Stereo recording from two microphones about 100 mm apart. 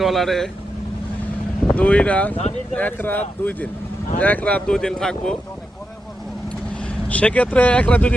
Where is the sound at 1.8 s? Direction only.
15° left (ahead or behind).